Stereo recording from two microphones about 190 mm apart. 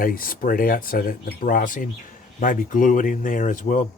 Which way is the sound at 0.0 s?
50° left (ahead or behind).